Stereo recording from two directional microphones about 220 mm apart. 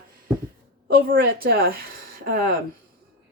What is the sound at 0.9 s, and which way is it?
A woman's voice, 40° right (ahead or behind).